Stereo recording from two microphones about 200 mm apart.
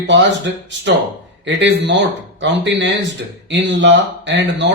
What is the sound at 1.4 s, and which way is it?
A man's voice, 65° right (ahead or behind).